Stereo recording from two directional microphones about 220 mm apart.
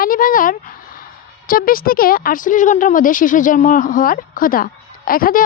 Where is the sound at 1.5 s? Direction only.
40° left (ahead or behind).